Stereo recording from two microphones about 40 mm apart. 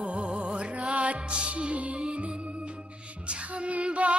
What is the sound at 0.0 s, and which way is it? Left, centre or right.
Music, right.